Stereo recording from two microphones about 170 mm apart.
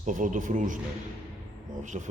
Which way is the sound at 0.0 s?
50° right (ahead or behind).